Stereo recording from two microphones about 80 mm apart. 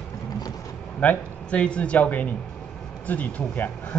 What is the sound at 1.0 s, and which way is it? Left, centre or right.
A man's voice, centre.